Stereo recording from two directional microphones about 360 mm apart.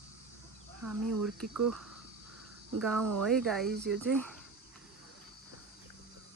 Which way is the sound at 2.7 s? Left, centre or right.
Centre.